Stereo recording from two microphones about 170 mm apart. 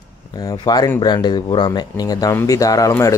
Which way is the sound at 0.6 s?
25° left (ahead or behind).